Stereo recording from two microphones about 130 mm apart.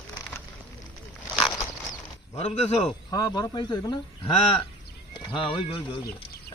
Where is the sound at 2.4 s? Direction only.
55° left (ahead or behind).